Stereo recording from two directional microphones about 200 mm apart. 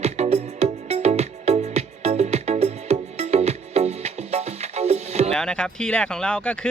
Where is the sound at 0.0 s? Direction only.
35° right (ahead or behind).